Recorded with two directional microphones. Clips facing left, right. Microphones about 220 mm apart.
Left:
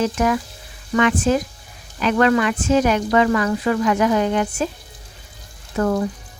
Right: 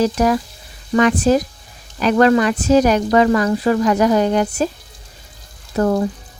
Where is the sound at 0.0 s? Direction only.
35° right (ahead or behind).